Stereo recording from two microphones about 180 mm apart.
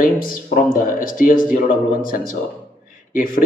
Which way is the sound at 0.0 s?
50° left (ahead or behind).